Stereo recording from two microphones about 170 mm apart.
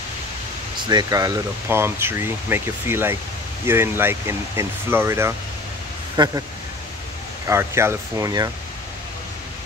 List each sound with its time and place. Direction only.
0.7 s speech: 25° right (ahead or behind)
7.4 s speech: 15° right (ahead or behind)